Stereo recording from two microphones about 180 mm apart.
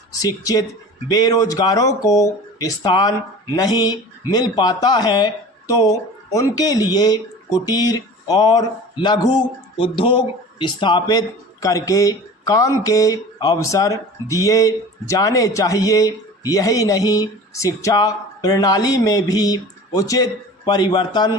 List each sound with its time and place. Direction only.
0.1 s a woman's voice: 20° left (ahead or behind)